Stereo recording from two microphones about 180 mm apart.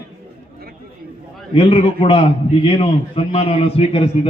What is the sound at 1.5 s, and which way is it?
A man's voice, 30° left (ahead or behind).